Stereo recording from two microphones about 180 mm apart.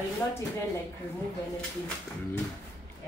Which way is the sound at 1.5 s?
5° left (ahead or behind).